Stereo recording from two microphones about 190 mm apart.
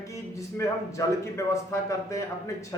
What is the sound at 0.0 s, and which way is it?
A man's voice, 15° left (ahead or behind).